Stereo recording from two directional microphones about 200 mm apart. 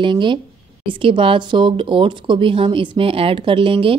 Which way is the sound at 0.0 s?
25° right (ahead or behind).